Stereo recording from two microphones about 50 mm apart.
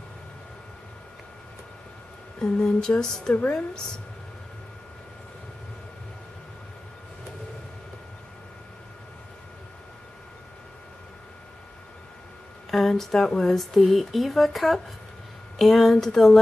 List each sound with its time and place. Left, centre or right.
2.4 s speech: centre
12.7 s speech: centre